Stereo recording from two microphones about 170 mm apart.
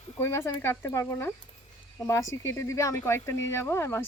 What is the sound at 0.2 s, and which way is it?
Speech, 15° left (ahead or behind).